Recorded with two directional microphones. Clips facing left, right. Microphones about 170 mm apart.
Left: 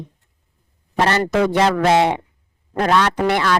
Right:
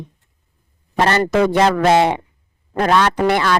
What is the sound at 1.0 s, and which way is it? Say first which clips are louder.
A man's voice: right 2 dB; 45° right (ahead or behind).